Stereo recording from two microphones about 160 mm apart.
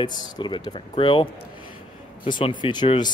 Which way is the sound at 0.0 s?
25° left (ahead or behind).